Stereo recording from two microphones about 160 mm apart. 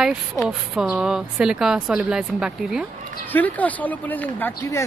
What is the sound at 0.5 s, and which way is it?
Speech, 5° right (ahead or behind).